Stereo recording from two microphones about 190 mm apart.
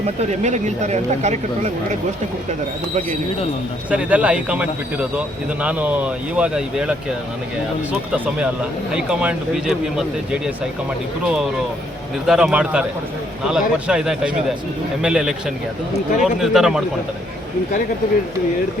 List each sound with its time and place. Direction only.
0.3 s speech: 40° right (ahead or behind)
3.8 s speech: 5° right (ahead or behind)
8.1 s speech: 5° right (ahead or behind)
12.2 s speech: 5° right (ahead or behind)